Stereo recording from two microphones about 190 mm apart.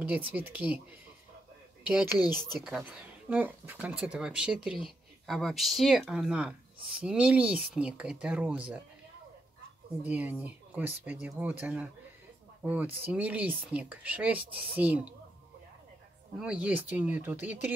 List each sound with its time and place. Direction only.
0.0 s speech: 10° right (ahead or behind)
1.9 s speech: 5° right (ahead or behind)
2.1 s speech: 20° left (ahead or behind)
2.6 s speech: 5° right (ahead or behind)
10.0 s speech: 10° right (ahead or behind)
16.3 s speech: 5° right (ahead or behind)